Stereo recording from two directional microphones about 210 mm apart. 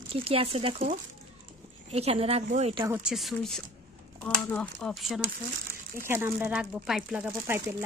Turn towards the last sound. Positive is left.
turn(degrees=-5)  # may be behind; listen again after turning